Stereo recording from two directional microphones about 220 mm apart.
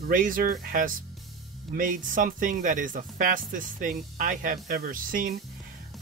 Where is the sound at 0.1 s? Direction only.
40° right (ahead or behind).